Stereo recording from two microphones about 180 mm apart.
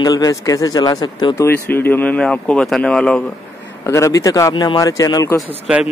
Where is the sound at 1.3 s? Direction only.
10° left (ahead or behind).